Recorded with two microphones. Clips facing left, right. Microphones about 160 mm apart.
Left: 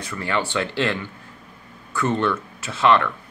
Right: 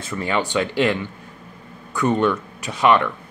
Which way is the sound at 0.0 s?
20° right (ahead or behind).